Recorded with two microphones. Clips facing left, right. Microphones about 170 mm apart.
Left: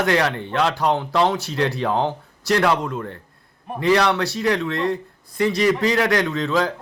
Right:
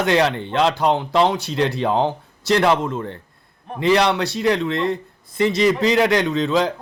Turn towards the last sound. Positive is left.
turn(degrees=-20)  # may be behind; listen again after turning